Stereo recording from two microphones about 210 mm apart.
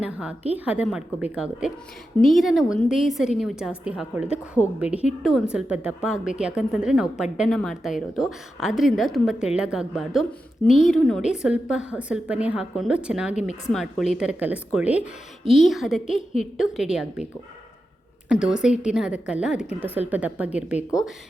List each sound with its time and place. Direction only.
0.0 s a woman's voice: 5° right (ahead or behind)
13.3 s speech: 35° left (ahead or behind)
13.7 s a woman's voice: centre (ahead or behind)
18.3 s a woman's voice: 5° right (ahead or behind)